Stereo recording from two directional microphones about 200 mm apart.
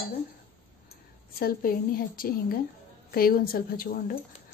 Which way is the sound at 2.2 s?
50° left (ahead or behind).